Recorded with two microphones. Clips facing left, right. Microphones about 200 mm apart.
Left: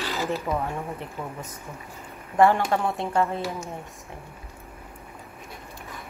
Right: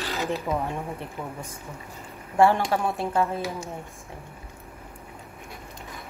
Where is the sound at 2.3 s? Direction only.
15° right (ahead or behind).